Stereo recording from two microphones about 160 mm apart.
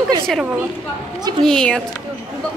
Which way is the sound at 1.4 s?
5° left (ahead or behind).